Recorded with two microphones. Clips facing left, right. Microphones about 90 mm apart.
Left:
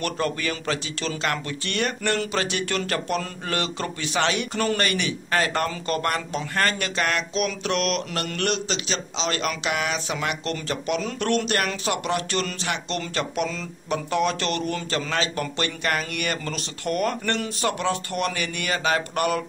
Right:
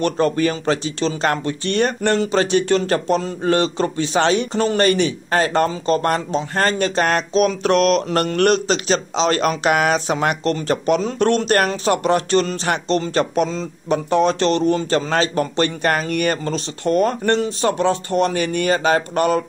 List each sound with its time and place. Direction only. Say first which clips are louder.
0.0 s speech: right 9 dB; 35° right (ahead or behind)